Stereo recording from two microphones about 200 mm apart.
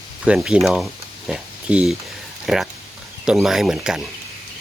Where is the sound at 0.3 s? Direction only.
5° right (ahead or behind).